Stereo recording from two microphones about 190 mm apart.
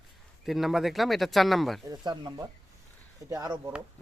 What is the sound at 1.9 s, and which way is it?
Speech, 20° right (ahead or behind).